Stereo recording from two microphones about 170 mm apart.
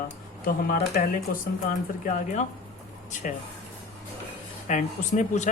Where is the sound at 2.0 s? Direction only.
45° left (ahead or behind).